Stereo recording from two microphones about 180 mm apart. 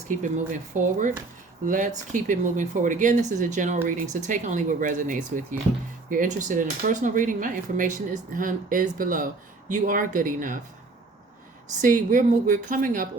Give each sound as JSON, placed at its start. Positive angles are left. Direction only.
{"t": 0.1, "sound": "speech", "side_deg": -45}
{"t": 11.8, "sound": "speech", "side_deg": -45}